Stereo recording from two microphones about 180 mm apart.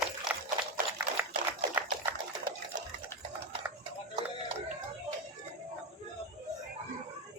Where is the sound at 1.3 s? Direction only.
50° right (ahead or behind).